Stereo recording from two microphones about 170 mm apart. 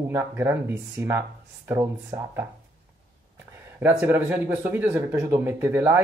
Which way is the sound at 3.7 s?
10° right (ahead or behind).